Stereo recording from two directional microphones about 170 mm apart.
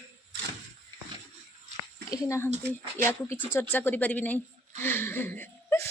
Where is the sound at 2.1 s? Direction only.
15° left (ahead or behind).